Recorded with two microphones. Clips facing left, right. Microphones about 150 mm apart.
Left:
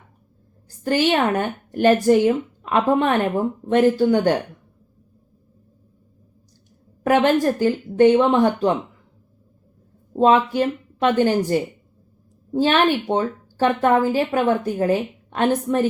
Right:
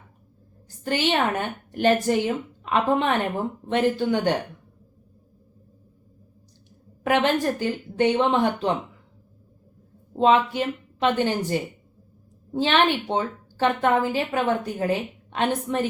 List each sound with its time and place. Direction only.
0.9 s a woman's voice: 45° left (ahead or behind)
7.0 s a woman's voice: 45° left (ahead or behind)
10.2 s a woman's voice: 45° left (ahead or behind)